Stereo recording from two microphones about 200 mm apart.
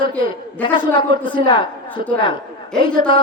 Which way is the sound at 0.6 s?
25° left (ahead or behind).